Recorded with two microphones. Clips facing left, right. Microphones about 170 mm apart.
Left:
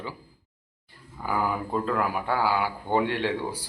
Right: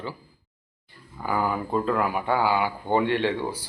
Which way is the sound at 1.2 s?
5° left (ahead or behind).